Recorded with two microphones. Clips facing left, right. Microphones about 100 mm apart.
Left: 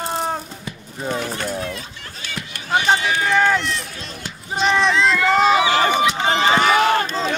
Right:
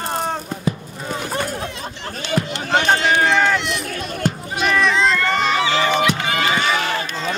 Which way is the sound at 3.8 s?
55° right (ahead or behind).